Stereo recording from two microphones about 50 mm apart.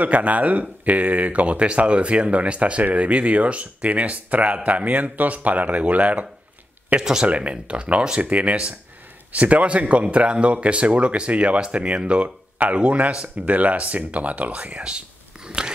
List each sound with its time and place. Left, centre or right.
0.0 s speech: right
7.0 s speech: centre
7.2 s speech: right